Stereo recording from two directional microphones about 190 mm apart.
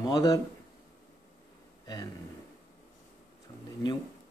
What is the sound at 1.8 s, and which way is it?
Speech, 20° left (ahead or behind).